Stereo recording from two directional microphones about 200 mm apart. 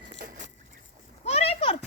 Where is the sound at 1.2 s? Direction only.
30° left (ahead or behind).